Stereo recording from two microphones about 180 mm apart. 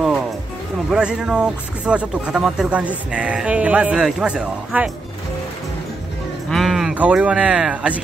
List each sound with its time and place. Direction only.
0.8 s speech: 5° right (ahead or behind)
6.5 s speech: centre (ahead or behind)